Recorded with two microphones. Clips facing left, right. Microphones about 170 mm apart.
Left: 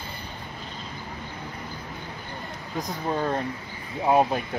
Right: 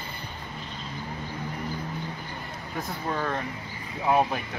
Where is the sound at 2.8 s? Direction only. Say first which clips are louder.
Left 3 dB; 25° left (ahead or behind).